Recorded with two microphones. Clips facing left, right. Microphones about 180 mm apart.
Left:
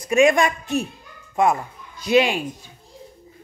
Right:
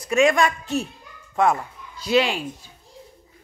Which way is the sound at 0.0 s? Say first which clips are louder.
Left 2 dB; 15° left (ahead or behind).